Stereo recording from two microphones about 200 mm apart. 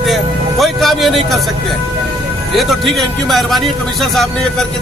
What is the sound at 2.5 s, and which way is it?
Speech, centre (ahead or behind).